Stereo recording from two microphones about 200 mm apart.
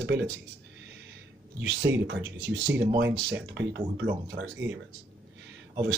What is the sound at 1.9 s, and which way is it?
Speech, 15° right (ahead or behind).